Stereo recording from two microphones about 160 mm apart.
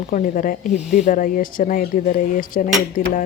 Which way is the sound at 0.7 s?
5° right (ahead or behind).